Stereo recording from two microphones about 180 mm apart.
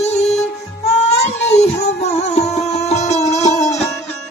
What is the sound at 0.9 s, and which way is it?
Child singing, 40° left (ahead or behind).